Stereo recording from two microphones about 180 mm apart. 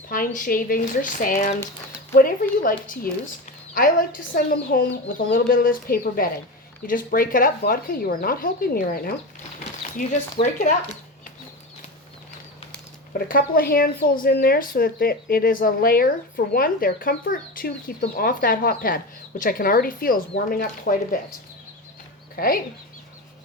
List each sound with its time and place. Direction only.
0.1 s speech: 50° left (ahead or behind)
10.3 s speech: 40° left (ahead or behind)
13.1 s speech: 50° left (ahead or behind)
22.4 s speech: 55° left (ahead or behind)